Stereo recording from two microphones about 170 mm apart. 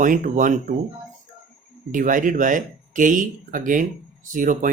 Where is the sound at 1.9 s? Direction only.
50° right (ahead or behind).